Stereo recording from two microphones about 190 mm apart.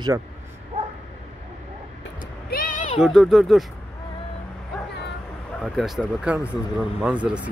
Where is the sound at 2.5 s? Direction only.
45° left (ahead or behind).